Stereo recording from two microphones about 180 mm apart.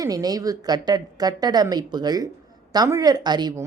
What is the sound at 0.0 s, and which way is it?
A woman's voice, 20° right (ahead or behind).